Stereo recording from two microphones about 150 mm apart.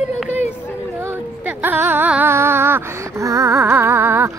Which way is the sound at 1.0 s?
15° right (ahead or behind).